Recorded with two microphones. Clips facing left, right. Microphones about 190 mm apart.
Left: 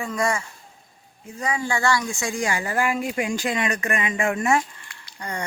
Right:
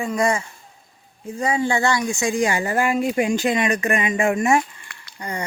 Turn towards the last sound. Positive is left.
turn(degrees=-10)  # may be behind; listen again after turning